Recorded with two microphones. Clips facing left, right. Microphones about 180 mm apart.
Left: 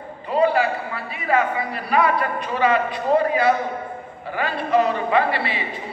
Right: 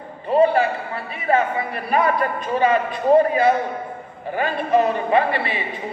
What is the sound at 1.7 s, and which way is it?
A man's voice, 50° right (ahead or behind).